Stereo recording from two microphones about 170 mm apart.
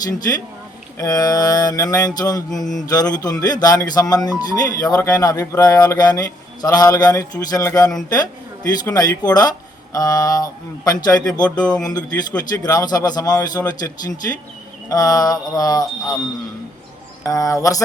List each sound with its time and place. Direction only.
0.0 s speech: 25° left (ahead or behind)
2.5 s mantra: centre (ahead or behind)
2.9 s speech: 20° left (ahead or behind)
11.4 s speech: 5° left (ahead or behind)
11.7 s speech: 20° left (ahead or behind)
14.8 s speech: 20° left (ahead or behind)
17.2 s speech: 20° left (ahead or behind)